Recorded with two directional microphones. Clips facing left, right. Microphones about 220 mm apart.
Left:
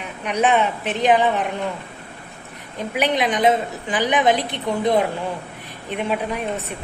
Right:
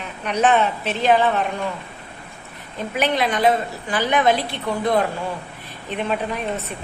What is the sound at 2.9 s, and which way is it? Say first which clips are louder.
A woman's voice: left 1 dB; 15° left (ahead or behind).